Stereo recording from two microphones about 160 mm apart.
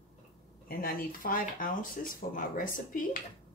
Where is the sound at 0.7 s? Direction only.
65° left (ahead or behind).